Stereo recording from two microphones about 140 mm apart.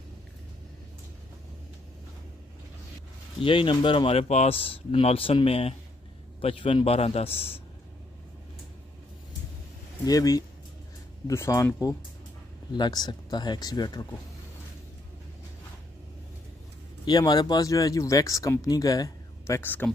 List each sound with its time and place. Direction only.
3.4 s speech: 40° left (ahead or behind)
10.0 s speech: 25° left (ahead or behind)
17.0 s speech: 30° left (ahead or behind)